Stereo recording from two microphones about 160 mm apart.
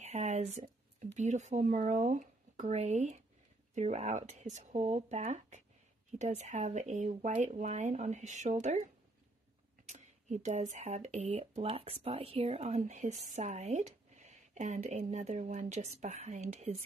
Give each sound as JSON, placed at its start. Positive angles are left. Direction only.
{"t": 0.0, "sound": "a woman's voice", "side_deg": -45}
{"t": 11.6, "sound": "a woman's voice", "side_deg": -35}